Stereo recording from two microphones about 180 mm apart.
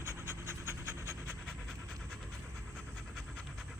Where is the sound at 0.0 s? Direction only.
15° right (ahead or behind).